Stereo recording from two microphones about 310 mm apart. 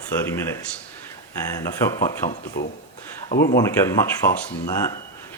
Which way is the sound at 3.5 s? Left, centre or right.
Centre.